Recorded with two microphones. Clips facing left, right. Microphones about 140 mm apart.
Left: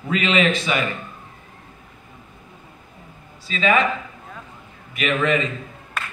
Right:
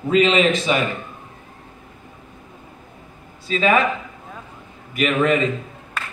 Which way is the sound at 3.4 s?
45° right (ahead or behind).